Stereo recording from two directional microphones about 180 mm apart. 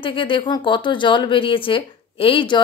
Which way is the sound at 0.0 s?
30° left (ahead or behind).